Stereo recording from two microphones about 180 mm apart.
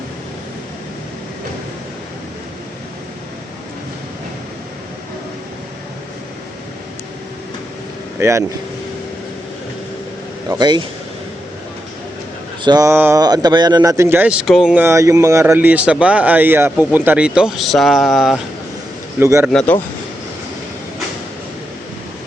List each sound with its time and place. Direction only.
8.2 s speech: 15° right (ahead or behind)
10.5 s speech: 25° right (ahead or behind)
12.6 s speech: 20° right (ahead or behind); by 18.3 s centre (ahead or behind)
19.2 s speech: 15° right (ahead or behind)
19.5 s speech: 10° left (ahead or behind)